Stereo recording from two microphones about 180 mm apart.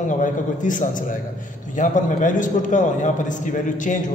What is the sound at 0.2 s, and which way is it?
A man's voice, 45° left (ahead or behind).